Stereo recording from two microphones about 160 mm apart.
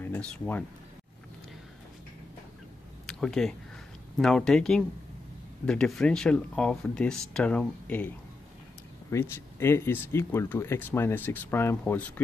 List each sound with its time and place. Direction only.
0.0 s speech: 10° left (ahead or behind)
3.1 s speech: 5° left (ahead or behind)
9.1 s speech: 15° left (ahead or behind)